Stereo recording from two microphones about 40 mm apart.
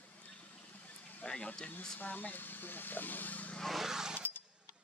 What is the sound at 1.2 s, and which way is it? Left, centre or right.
Speech, left.